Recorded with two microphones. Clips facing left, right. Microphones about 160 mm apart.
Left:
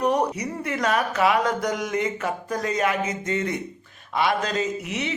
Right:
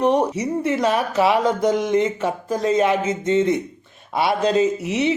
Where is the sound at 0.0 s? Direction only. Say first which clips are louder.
Right 4 dB; 25° right (ahead or behind).